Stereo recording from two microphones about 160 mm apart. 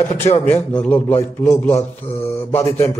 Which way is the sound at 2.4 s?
15° left (ahead or behind).